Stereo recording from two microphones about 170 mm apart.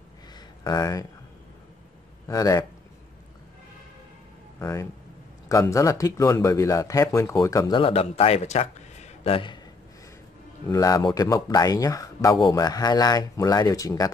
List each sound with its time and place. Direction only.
0.7 s speech: 20° left (ahead or behind)
2.2 s speech: 20° left (ahead or behind)
4.6 s speech: 20° left (ahead or behind)
7.8 s speech: 35° left (ahead or behind)
10.7 s speech: 20° left (ahead or behind)